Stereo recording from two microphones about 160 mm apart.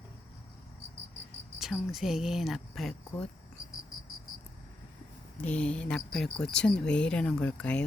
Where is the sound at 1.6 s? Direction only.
Centre (ahead or behind).